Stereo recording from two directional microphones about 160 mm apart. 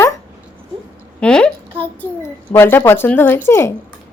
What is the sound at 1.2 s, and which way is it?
A woman's voice, 5° left (ahead or behind).